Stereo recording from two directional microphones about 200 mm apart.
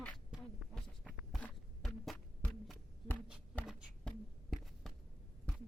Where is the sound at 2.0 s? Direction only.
5° left (ahead or behind).